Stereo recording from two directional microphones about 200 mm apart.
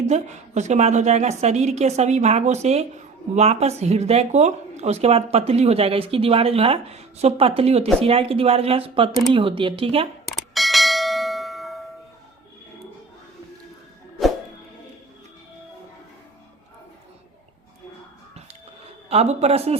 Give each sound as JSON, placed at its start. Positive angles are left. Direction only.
{"t": 0.1, "sound": "speech", "side_deg": -35}
{"t": 10.2, "sound": "bell", "side_deg": 0}
{"t": 19.0, "sound": "speech", "side_deg": -30}